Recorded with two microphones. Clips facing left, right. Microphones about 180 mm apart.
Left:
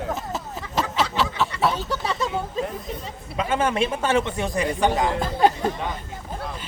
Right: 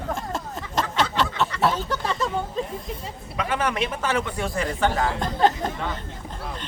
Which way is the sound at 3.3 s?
25° left (ahead or behind).